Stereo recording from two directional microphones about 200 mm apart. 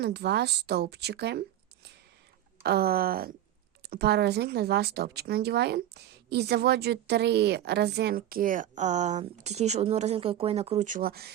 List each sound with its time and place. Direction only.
0.0 s speech: 55° right (ahead or behind)